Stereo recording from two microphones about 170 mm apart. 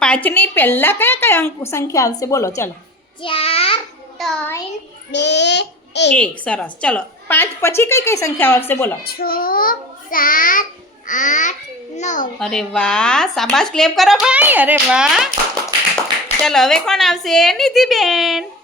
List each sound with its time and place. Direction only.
0.0 s a woman's voice: 10° left (ahead or behind)
3.2 s child singing: 35° left (ahead or behind)
5.1 s a child's voice: 90° left
6.1 s a woman's voice: 5° left (ahead or behind)
9.0 s a child's voice: 60° left (ahead or behind); by 12.3 s 45° left (ahead or behind)
12.4 s speech: 5° left (ahead or behind)
16.4 s speech: centre (ahead or behind)